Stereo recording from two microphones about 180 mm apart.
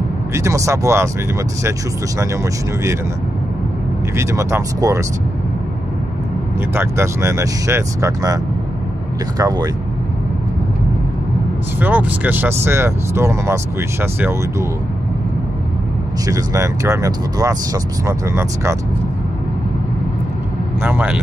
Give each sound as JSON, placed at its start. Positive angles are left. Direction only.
{"t": 0.3, "sound": "speech", "side_deg": -15}
{"t": 4.2, "sound": "speech", "side_deg": -15}
{"t": 6.7, "sound": "speech", "side_deg": -15}
{"t": 9.4, "sound": "speech", "side_deg": -20}
{"t": 11.8, "sound": "speech", "side_deg": -10}
{"t": 16.3, "sound": "speech", "side_deg": -20}
{"t": 20.8, "sound": "speech", "side_deg": -10}